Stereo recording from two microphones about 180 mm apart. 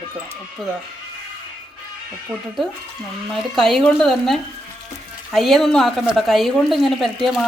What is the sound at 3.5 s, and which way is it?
A woman's voice, centre (ahead or behind).